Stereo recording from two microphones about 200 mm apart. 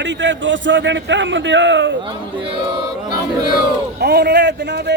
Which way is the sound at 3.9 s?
55° right (ahead or behind).